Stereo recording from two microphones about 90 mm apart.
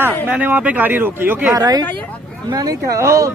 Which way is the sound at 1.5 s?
45° right (ahead or behind).